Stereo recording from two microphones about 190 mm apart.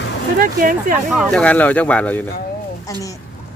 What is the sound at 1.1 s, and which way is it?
Speech, centre (ahead or behind).